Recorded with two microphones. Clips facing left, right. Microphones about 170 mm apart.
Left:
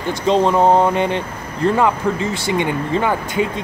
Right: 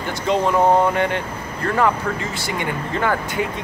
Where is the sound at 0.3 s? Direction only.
20° left (ahead or behind).